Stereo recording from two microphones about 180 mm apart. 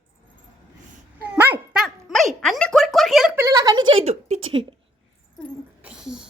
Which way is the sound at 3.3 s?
15° right (ahead or behind).